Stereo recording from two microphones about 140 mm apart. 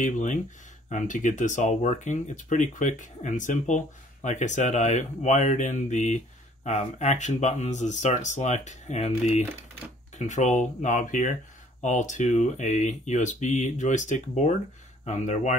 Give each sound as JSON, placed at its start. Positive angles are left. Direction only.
{"t": 0.0, "sound": "speech", "side_deg": 65}